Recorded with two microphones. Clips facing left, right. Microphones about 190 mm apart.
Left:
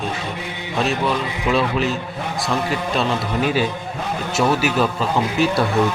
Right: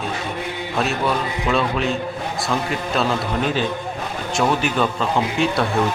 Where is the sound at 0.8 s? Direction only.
Centre (ahead or behind).